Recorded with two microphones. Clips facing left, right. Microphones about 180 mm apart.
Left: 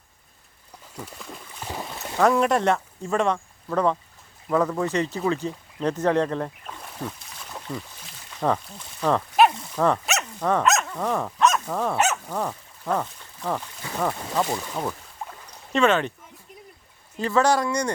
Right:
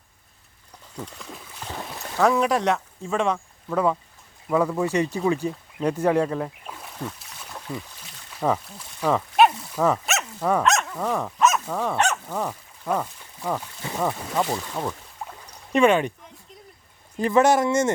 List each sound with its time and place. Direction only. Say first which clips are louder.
0.9 s speech: right 1 dB; 5° left (ahead or behind)
1.6 s boat: left 1 dB; 5° left (ahead or behind)
2.2 s speech: left 1 dB; centre (ahead or behind)
7.2 s a sound: left 1 dB; centre (ahead or behind)
8.4 s speech: even; 5° right (ahead or behind)
15.7 s speech: right 2 dB; 15° right (ahead or behind)
17.2 s speech: right 3 dB; 20° right (ahead or behind)